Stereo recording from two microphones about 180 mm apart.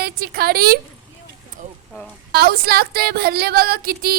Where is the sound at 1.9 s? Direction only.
5° left (ahead or behind).